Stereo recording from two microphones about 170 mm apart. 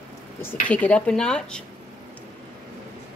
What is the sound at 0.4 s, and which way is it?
Speech, 10° left (ahead or behind).